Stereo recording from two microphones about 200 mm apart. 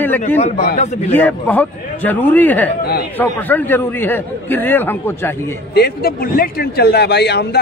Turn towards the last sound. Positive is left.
turn(degrees=55)  # may be behind; listen again after turning